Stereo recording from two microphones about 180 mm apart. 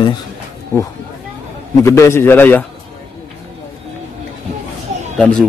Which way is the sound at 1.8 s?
15° left (ahead or behind).